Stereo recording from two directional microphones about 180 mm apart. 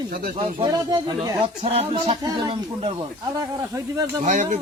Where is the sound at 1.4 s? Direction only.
35° right (ahead or behind); by 4.2 s 15° right (ahead or behind).